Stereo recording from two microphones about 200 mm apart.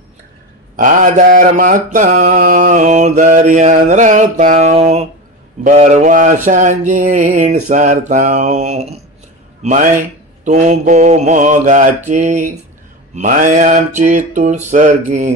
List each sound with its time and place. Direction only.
0.7 s mantra: 40° right (ahead or behind)